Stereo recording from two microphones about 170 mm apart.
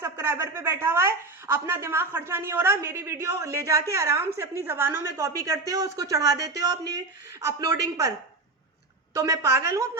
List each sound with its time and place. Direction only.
0.0 s a woman's voice: 15° right (ahead or behind)
9.1 s a woman's voice: 15° right (ahead or behind)